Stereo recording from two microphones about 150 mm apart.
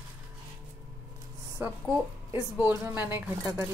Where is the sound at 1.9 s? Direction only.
15° right (ahead or behind).